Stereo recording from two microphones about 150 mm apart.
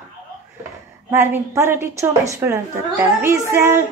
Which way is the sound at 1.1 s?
15° right (ahead or behind).